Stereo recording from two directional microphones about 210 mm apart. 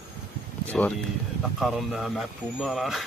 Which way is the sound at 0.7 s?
Centre (ahead or behind).